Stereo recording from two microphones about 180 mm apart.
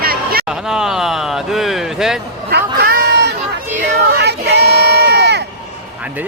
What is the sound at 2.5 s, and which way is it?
Chatter, 65° right (ahead or behind).